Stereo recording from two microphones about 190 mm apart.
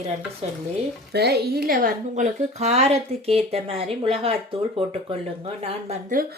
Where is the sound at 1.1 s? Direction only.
60° right (ahead or behind); by 4.4 s 30° right (ahead or behind).